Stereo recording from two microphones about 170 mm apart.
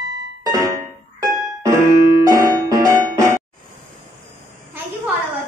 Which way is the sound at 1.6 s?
20° right (ahead or behind).